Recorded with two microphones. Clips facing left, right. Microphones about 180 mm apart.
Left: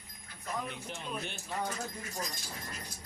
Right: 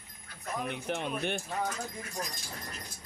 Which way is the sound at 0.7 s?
65° right (ahead or behind).